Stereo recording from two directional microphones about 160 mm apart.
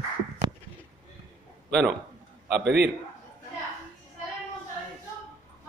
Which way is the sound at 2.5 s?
90° right.